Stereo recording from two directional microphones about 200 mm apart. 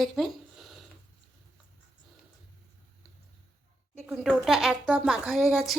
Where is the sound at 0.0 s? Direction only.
Centre (ahead or behind).